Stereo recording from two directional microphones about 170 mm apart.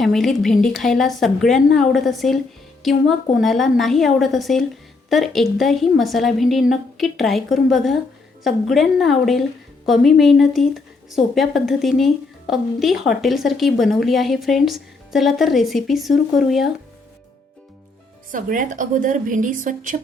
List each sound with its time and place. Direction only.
0.0 s speech: centre (ahead or behind)
18.3 s a woman's voice: 50° right (ahead or behind)